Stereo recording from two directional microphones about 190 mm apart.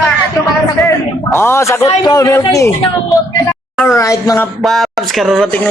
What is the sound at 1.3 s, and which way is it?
A man's voice, 15° left (ahead or behind).